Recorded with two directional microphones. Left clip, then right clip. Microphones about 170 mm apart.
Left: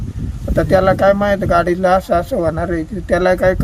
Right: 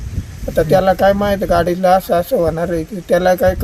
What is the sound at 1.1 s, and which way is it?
Speech, 10° right (ahead or behind).